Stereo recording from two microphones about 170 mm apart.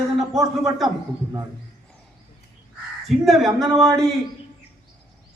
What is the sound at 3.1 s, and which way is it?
A man's voice, centre (ahead or behind).